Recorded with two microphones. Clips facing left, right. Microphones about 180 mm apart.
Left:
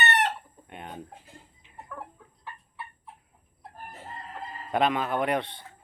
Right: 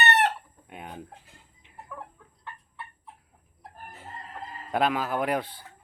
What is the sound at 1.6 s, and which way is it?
Chicken, 60° right (ahead or behind).